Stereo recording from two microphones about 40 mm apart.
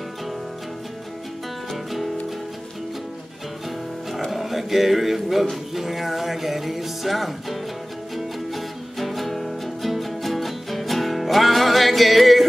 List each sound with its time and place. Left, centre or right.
1.7 s music: centre
4.3 s speech: centre
8.1 s music: centre